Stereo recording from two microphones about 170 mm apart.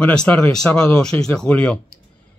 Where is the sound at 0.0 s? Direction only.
5° left (ahead or behind).